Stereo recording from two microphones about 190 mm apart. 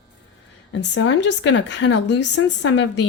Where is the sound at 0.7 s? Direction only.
75° left (ahead or behind).